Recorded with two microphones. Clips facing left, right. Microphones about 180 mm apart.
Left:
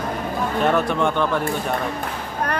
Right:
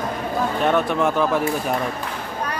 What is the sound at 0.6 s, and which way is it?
Speech, centre (ahead or behind).